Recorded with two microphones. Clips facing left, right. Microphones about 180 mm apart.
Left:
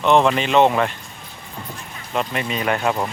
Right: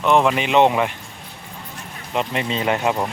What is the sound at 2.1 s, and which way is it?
Speech, 20° right (ahead or behind).